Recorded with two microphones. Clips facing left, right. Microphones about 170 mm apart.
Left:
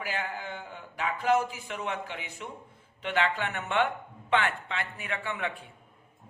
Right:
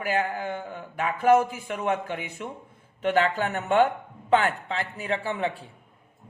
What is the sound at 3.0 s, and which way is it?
A man's voice, 45° right (ahead or behind).